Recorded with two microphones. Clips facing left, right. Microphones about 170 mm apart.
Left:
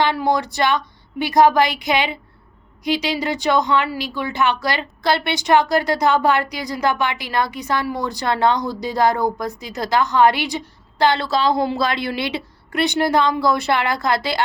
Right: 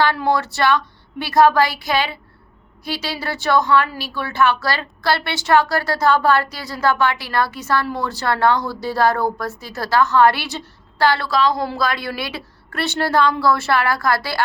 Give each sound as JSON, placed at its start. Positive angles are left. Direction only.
{"t": 0.0, "sound": "speech", "side_deg": 15}